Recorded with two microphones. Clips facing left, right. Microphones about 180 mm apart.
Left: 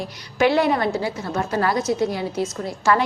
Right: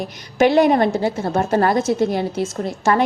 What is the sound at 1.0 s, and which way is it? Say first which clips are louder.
A woman's voice: right 5 dB; 50° right (ahead or behind).